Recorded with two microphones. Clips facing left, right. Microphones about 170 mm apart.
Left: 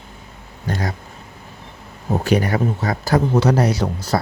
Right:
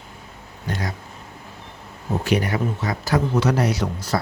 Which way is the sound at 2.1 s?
40° left (ahead or behind).